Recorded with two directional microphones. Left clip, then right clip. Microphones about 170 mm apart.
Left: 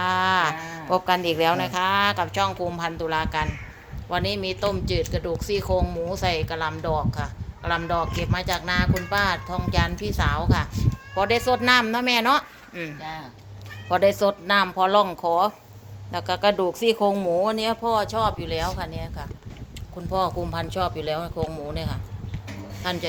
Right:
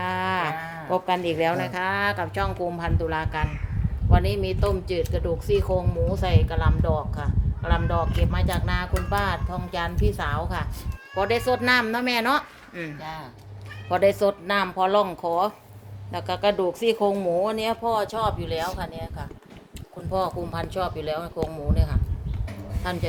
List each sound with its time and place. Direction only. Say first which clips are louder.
0.0 s a sound: left 4 dB; 10° right (ahead or behind)
0.7 s speech: left 2 dB; 5° right (ahead or behind)
13.9 s speech: left 1 dB; 5° right (ahead or behind)